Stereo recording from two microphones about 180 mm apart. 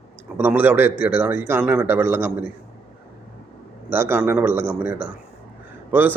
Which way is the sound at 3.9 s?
10° right (ahead or behind).